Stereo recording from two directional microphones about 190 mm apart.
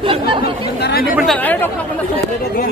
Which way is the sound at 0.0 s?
25° right (ahead or behind).